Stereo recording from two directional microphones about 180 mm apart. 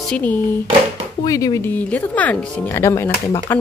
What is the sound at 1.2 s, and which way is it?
Speech, 20° left (ahead or behind).